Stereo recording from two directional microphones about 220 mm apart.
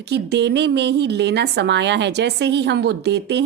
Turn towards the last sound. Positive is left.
turn(degrees=-50)  # may be behind; listen again after turning